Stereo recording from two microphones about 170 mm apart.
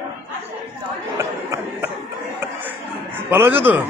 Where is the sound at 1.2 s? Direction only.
15° right (ahead or behind).